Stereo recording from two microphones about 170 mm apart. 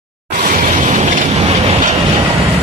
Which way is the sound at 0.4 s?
50° right (ahead or behind).